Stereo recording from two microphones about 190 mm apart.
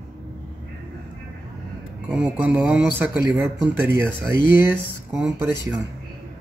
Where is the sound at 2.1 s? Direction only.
5° right (ahead or behind).